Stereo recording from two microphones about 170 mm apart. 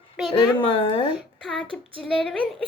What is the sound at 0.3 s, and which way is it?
Speech, 30° left (ahead or behind).